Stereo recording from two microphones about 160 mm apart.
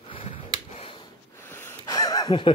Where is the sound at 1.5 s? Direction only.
20° left (ahead or behind).